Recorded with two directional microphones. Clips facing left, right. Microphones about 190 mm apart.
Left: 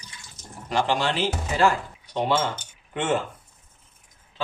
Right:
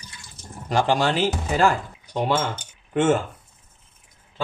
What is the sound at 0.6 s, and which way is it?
Speech, 45° right (ahead or behind).